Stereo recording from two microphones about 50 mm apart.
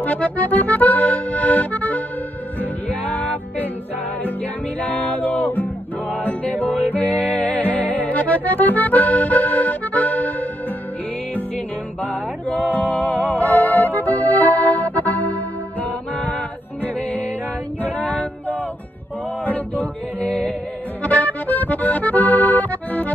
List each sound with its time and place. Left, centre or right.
0.0 s accordion: left
2.6 s music: left
4.7 s music: left
8.1 s accordion: left
12.0 s music: left
17.8 s female singing: left
19.4 s music: left
21.0 s accordion: left